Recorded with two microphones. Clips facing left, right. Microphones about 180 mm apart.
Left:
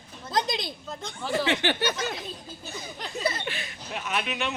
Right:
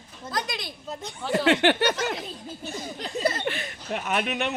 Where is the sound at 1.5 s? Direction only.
65° right (ahead or behind).